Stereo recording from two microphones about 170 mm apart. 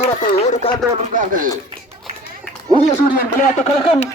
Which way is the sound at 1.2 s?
55° right (ahead or behind).